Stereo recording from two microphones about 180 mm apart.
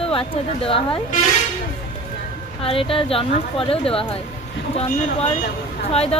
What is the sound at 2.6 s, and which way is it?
A woman's voice, 30° left (ahead or behind).